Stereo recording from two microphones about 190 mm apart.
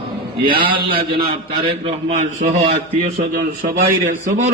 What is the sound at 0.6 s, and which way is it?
Speech, 25° right (ahead or behind).